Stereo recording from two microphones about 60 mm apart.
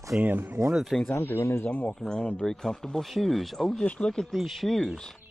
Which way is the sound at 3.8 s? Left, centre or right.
Centre.